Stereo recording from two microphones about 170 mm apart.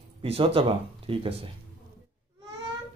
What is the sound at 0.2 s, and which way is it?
Speech, 35° right (ahead or behind).